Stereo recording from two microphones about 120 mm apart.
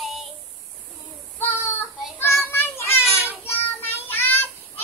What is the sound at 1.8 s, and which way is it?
Child singing, 20° left (ahead or behind).